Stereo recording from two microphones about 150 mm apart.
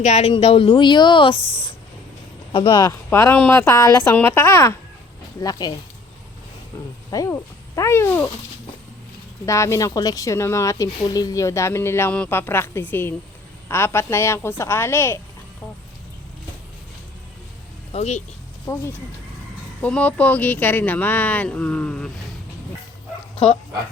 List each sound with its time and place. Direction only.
0.0 s speech: 45° left (ahead or behind)
2.5 s speech: 35° left (ahead or behind)
2.9 s speech: 15° left (ahead or behind)
7.1 s speech: 25° left (ahead or behind)
9.5 s speech: 20° left (ahead or behind)
17.9 s speech: 45° left (ahead or behind)
18.7 s speech: 20° left (ahead or behind)
19.8 s speech: 10° left (ahead or behind)